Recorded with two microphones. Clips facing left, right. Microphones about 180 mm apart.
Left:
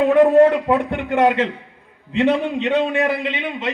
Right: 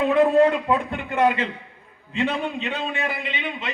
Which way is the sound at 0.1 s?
50° left (ahead or behind).